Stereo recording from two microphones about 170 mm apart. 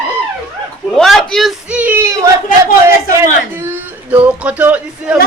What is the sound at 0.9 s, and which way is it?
A man's voice, centre (ahead or behind).